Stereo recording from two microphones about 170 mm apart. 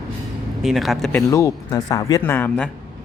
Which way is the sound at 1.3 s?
20° left (ahead or behind).